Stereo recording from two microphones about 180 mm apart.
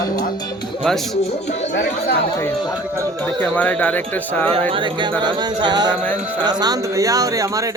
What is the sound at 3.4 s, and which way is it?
Speech, 10° left (ahead or behind).